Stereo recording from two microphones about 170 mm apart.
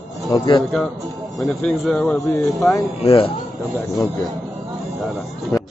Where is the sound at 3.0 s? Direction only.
35° left (ahead or behind).